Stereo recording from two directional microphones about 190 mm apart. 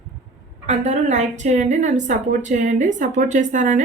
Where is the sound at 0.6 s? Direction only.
35° right (ahead or behind).